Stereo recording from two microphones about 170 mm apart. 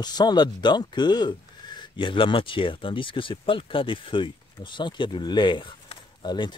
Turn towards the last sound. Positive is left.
turn(degrees=25)  # may be behind; listen again after turning